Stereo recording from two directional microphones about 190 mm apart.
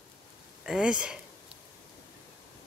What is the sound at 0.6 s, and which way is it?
Speech, 5° right (ahead or behind).